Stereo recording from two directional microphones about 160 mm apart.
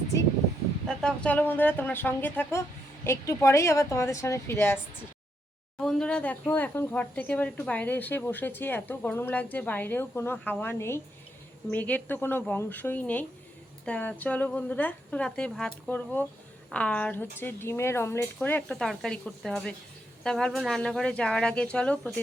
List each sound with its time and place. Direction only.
0.9 s speech: 5° left (ahead or behind)
5.7 s speech: 5° left (ahead or behind)